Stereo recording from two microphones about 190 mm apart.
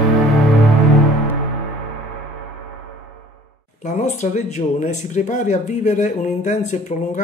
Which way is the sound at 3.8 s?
40° left (ahead or behind).